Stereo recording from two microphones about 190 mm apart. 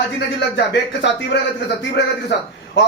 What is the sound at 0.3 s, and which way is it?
A man's voice, 65° left (ahead or behind).